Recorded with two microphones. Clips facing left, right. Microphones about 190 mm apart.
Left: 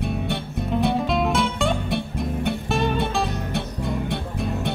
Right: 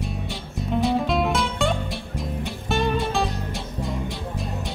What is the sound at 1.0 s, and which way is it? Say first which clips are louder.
Music: left 1 dB; centre (ahead or behind).